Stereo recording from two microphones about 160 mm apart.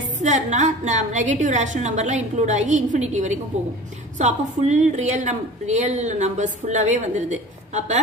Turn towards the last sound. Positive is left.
turn(degrees=-45)  # may be behind; listen again after turning